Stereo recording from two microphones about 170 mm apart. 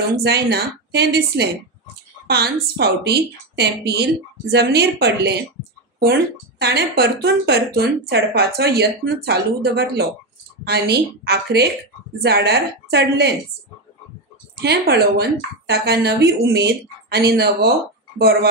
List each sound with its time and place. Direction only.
0.0 s speech: 70° right (ahead or behind)
6.6 s speech: 70° right (ahead or behind)
14.6 s speech: 70° right (ahead or behind)